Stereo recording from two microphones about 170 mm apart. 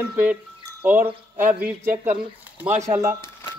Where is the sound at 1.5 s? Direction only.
10° right (ahead or behind).